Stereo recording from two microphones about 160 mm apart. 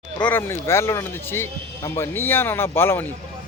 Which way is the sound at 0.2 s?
10° left (ahead or behind).